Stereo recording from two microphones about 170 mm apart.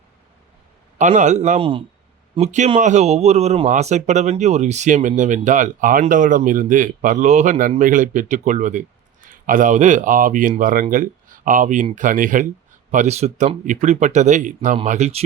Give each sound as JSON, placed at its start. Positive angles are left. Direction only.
{"t": 0.9, "sound": "speech", "side_deg": -45}